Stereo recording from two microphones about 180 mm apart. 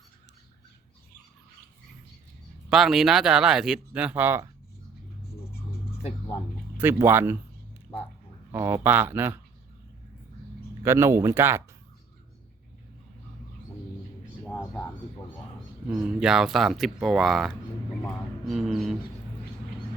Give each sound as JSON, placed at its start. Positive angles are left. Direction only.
{"t": 2.6, "sound": "speech", "side_deg": 0}
{"t": 6.0, "sound": "a sound", "side_deg": 35}
{"t": 6.7, "sound": "speech", "side_deg": -10}
{"t": 8.5, "sound": "speech", "side_deg": -15}
{"t": 10.8, "sound": "speech", "side_deg": -15}
{"t": 14.4, "sound": "a sound", "side_deg": 10}
{"t": 15.9, "sound": "speech", "side_deg": -5}
{"t": 18.5, "sound": "bird", "side_deg": 0}